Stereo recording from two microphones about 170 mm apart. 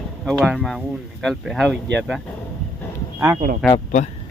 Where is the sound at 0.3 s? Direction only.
Centre (ahead or behind).